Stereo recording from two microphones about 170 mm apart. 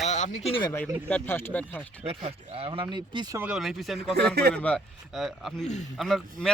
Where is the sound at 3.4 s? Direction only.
5° right (ahead or behind).